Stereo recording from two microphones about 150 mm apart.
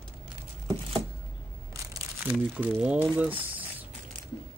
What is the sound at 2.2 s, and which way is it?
Speech, 10° right (ahead or behind).